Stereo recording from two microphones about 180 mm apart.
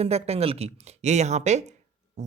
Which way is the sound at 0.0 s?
35° right (ahead or behind).